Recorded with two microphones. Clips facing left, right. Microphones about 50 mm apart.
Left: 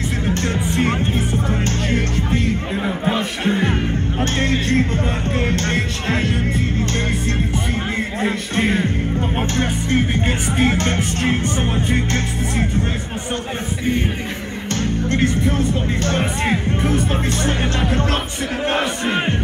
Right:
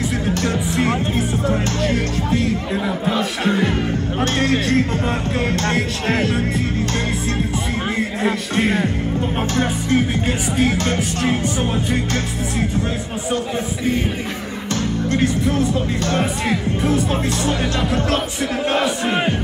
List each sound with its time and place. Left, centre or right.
0.3 s speech: left
8.2 s speech: left
9.6 s speech: left
15.0 s speech: left